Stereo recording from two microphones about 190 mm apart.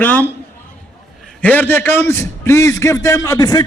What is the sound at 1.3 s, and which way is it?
A man's voice, 10° left (ahead or behind).